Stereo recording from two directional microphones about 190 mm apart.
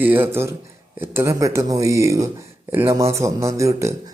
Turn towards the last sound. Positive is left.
turn(degrees=-15)  # may be behind; listen again after turning